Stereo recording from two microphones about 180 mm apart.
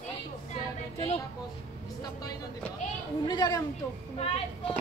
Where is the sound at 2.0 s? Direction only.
20° left (ahead or behind).